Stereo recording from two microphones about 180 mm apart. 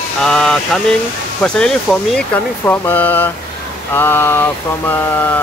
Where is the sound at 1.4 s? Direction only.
5° left (ahead or behind).